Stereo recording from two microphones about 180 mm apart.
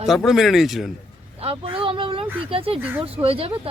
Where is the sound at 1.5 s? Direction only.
30° right (ahead or behind).